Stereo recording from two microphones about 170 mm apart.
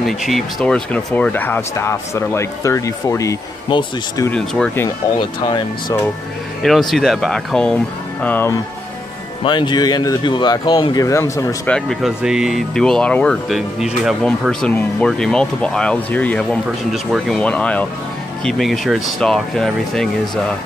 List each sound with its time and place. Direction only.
0.0 s speech: centre (ahead or behind); by 4.3 s 25° left (ahead or behind)
4.3 s speech: 5° left (ahead or behind)
5.4 s speech: 25° left (ahead or behind)
6.6 s speech: centre (ahead or behind)
9.4 s speech: 30° left (ahead or behind)
11.7 s speech: centre (ahead or behind)